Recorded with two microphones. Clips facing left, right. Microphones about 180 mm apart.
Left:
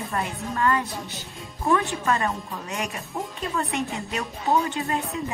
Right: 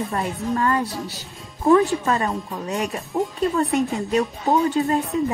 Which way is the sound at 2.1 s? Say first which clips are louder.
Right 2 dB; 30° right (ahead or behind).